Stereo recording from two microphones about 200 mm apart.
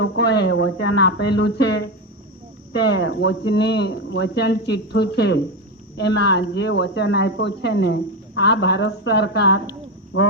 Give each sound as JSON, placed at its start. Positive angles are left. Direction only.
{"t": 0.0, "sound": "speech", "side_deg": 60}
{"t": 2.9, "sound": "speech", "side_deg": 65}